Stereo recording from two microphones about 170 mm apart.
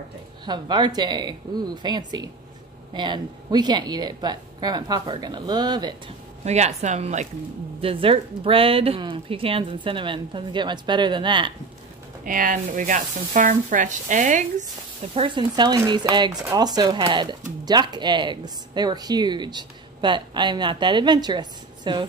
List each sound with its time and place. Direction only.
0.5 s speech: 25° right (ahead or behind)
6.4 s speech: 40° right (ahead or behind)
7.8 s speech: 30° right (ahead or behind)
12.3 s speech: 50° right (ahead or behind)
15.1 s speech: 30° right (ahead or behind)